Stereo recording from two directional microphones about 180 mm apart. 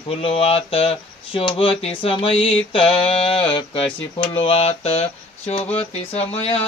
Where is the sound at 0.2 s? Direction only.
35° left (ahead or behind).